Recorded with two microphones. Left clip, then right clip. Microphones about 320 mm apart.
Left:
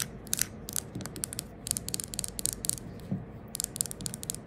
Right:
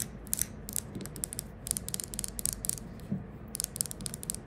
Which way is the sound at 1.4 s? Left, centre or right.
Centre.